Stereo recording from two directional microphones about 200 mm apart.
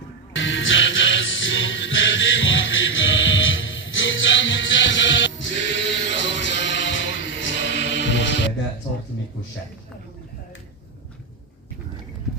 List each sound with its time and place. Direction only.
0.3 s music: 70° left (ahead or behind)